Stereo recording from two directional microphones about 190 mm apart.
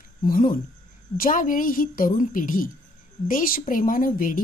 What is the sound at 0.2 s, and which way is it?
Speech, 45° left (ahead or behind).